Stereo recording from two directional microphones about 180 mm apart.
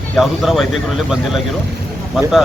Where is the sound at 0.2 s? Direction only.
Centre (ahead or behind).